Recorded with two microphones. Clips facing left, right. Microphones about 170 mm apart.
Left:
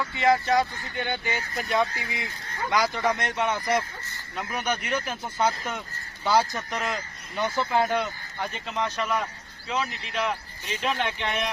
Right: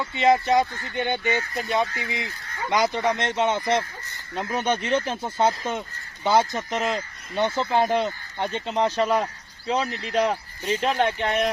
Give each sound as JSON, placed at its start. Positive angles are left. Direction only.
{"t": 0.0, "sound": "speech", "side_deg": -20}